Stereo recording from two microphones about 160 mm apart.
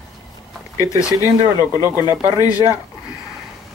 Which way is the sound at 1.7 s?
15° right (ahead or behind).